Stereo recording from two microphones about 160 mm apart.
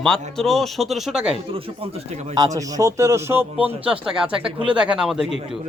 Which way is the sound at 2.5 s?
20° right (ahead or behind).